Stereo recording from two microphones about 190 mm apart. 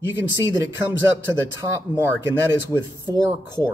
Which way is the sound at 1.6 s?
15° right (ahead or behind).